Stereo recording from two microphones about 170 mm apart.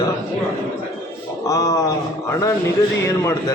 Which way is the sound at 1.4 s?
20° left (ahead or behind).